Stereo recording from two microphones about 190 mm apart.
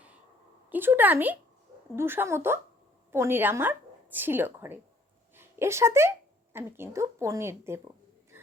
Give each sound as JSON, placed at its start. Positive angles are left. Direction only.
{"t": 0.7, "sound": "a woman's voice", "side_deg": -10}